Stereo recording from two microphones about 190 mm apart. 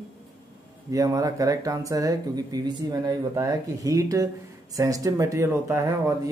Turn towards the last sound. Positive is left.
turn(degrees=-15)  # may be behind; listen again after turning